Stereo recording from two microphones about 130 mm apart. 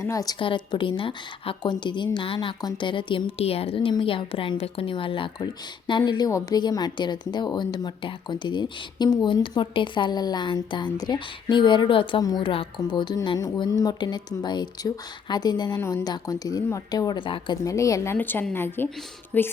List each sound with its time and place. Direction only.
0.0 s speech: 25° left (ahead or behind)
0.3 s a woman's voice: 40° left (ahead or behind)
12.2 s speech: 30° left (ahead or behind)
12.5 s a woman's voice: 40° left (ahead or behind)
15.8 s a woman's voice: 20° left (ahead or behind); by 17.6 s 40° left (ahead or behind)
17.7 s a woman's voice: 25° left (ahead or behind)